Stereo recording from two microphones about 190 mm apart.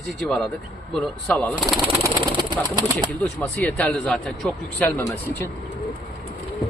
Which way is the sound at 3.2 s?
10° left (ahead or behind).